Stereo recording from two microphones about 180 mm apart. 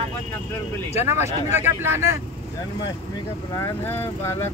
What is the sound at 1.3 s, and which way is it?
Speech, 40° left (ahead or behind).